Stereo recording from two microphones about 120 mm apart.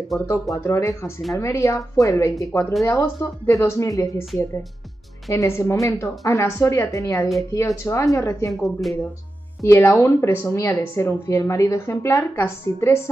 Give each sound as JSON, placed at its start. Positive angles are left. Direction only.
{"t": 0.7, "sound": "a woman's voice", "side_deg": 25}
{"t": 5.3, "sound": "a woman's voice", "side_deg": 25}
{"t": 8.5, "sound": "speech", "side_deg": 0}
{"t": 9.6, "sound": "a woman's voice", "side_deg": 20}